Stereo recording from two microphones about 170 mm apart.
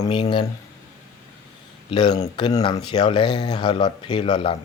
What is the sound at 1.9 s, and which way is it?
Speech, 25° left (ahead or behind).